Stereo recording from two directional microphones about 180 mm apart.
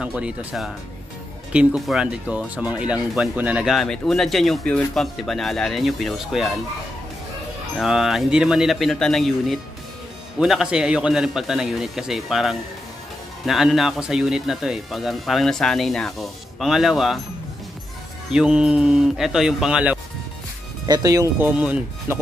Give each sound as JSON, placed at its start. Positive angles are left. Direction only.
{"t": 0.0, "sound": "speech", "side_deg": -5}
{"t": 7.7, "sound": "speech", "side_deg": 0}
{"t": 18.3, "sound": "speech", "side_deg": -5}
{"t": 20.8, "sound": "speech", "side_deg": -20}
{"t": 21.5, "sound": "speech", "side_deg": -5}